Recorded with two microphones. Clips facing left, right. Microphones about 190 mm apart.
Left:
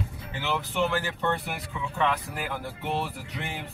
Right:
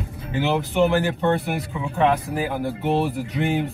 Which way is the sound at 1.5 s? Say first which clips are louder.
Right 8 dB; 50° right (ahead or behind).